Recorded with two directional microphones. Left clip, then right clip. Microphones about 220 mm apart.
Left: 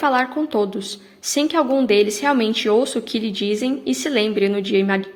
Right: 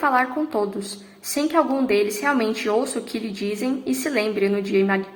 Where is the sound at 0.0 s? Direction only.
40° left (ahead or behind).